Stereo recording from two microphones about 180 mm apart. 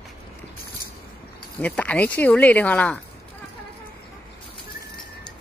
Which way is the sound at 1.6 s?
10° left (ahead or behind).